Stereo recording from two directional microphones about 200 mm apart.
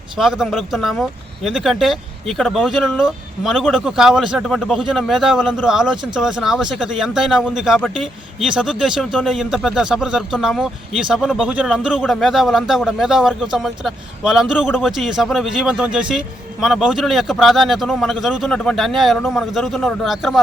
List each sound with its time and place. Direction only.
0.2 s speech: centre (ahead or behind)